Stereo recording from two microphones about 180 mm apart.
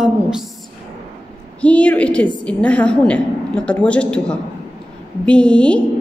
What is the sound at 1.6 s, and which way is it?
A woman's voice, 5° left (ahead or behind).